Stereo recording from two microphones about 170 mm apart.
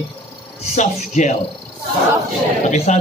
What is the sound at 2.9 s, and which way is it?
Speech, 45° left (ahead or behind).